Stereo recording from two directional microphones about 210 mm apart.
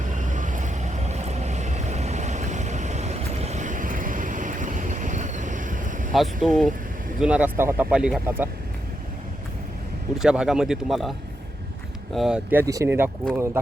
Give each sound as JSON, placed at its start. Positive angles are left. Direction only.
{"t": 0.0, "sound": "vehicle", "side_deg": -40}
{"t": 6.1, "sound": "speech", "side_deg": 0}
{"t": 10.2, "sound": "speech", "side_deg": -5}
{"t": 12.1, "sound": "speech", "side_deg": -5}